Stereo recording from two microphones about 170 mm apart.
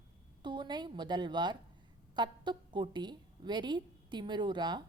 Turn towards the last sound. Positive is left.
turn(degrees=-25)  # may be behind; listen again after turning